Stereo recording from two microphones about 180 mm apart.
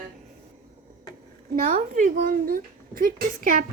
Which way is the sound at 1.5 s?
50° right (ahead or behind).